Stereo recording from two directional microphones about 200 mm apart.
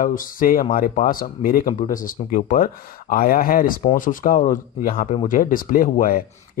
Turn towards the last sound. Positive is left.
turn(degrees=40)  # may be behind; listen again after turning